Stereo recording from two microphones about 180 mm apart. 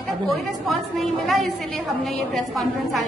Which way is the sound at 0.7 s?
Centre (ahead or behind).